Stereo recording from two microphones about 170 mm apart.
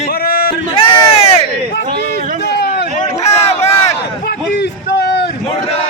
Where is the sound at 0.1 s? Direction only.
60° left (ahead or behind).